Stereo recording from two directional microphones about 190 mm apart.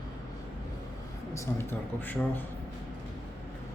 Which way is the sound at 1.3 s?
15° left (ahead or behind).